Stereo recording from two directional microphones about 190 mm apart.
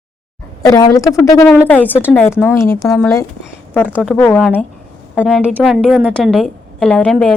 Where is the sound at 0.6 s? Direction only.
20° left (ahead or behind).